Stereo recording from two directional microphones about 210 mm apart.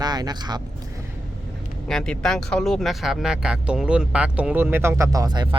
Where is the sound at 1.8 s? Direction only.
5° left (ahead or behind).